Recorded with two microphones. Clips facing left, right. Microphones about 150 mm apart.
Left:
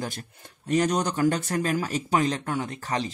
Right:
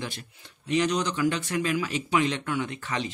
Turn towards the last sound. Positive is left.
turn(degrees=40)  # may be behind; listen again after turning